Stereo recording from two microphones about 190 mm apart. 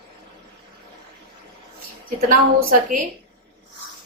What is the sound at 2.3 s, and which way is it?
Speech, 45° right (ahead or behind).